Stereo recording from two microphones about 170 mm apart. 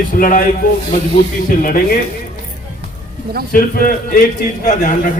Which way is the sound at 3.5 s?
55° left (ahead or behind).